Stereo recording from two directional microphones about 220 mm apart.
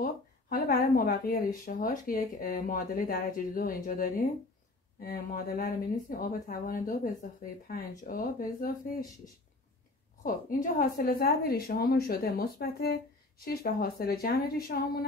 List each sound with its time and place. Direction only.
0.0 s speech: 45° left (ahead or behind)
10.2 s a woman's voice: 40° left (ahead or behind)